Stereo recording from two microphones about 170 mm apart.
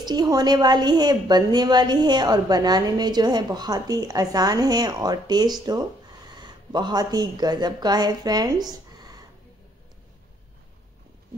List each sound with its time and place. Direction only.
0.0 s a woman's voice: 25° right (ahead or behind)